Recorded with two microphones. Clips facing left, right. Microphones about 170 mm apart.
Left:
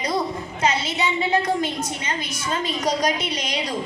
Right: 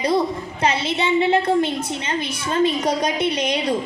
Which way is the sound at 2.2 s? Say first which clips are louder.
Right 4 dB; 60° right (ahead or behind).